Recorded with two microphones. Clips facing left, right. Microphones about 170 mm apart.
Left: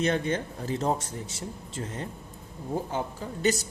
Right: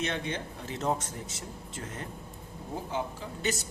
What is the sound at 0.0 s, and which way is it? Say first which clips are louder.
Speech: left 7 dB; 45° left (ahead or behind).